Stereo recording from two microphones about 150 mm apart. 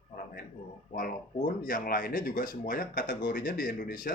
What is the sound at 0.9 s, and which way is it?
Speech, 65° left (ahead or behind).